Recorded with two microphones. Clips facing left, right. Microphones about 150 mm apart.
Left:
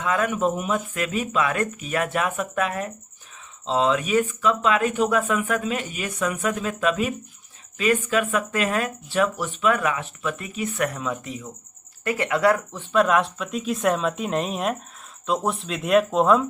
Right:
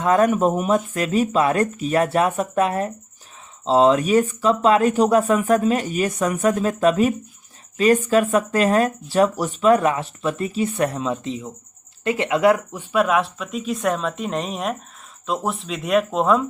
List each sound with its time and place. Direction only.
0.0 s speech: 40° right (ahead or behind); by 16.5 s centre (ahead or behind)